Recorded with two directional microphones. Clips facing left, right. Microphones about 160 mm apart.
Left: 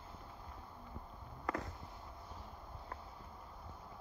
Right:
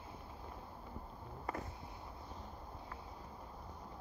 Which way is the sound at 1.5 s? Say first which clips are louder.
Left 3 dB; 85° left.